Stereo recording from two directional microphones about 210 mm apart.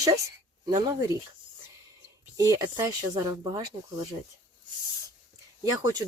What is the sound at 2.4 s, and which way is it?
Speech, 15° right (ahead or behind).